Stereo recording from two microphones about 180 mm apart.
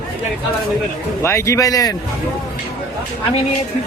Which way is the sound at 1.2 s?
15° left (ahead or behind).